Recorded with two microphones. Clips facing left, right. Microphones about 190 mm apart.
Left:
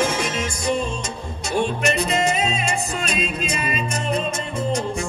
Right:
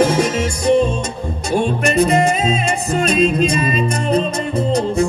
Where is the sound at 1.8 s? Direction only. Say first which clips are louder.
Right 7 dB; 50° right (ahead or behind).